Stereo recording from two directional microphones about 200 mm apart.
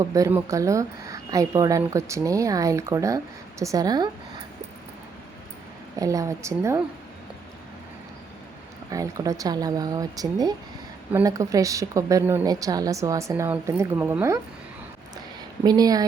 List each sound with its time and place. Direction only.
0.0 s a woman's voice: 15° right (ahead or behind)
6.0 s a woman's voice: 15° right (ahead or behind)
8.9 s a woman's voice: 15° right (ahead or behind)
15.6 s speech: 20° right (ahead or behind)